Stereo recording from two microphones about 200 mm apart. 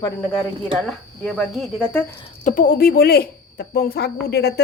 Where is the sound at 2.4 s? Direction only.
45° left (ahead or behind).